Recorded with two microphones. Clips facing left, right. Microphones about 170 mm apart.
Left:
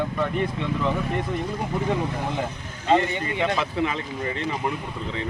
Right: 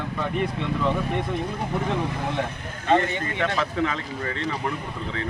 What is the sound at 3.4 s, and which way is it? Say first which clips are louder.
Speech: even; 15° left (ahead or behind).